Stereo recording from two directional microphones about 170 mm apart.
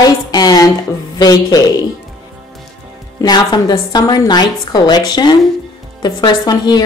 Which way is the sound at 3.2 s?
25° left (ahead or behind).